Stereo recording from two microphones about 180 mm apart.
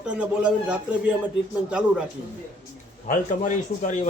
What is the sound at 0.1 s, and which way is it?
A man's voice, 5° right (ahead or behind).